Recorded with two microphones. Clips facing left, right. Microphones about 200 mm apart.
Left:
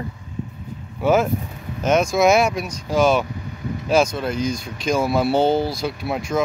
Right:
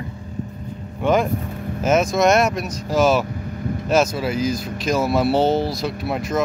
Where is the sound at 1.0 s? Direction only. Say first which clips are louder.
Left 1 dB; 5° left (ahead or behind).